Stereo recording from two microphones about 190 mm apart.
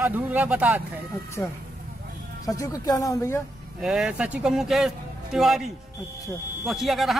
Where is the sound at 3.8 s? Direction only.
5° right (ahead or behind).